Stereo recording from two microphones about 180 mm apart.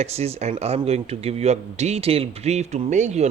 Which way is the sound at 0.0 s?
35° right (ahead or behind).